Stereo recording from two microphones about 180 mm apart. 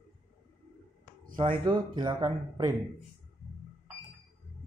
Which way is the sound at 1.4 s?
25° right (ahead or behind).